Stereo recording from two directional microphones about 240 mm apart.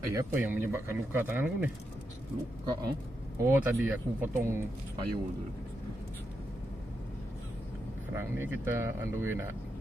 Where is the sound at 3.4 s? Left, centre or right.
Centre.